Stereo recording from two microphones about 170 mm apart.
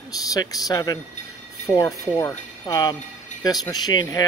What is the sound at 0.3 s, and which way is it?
Speech, 20° left (ahead or behind).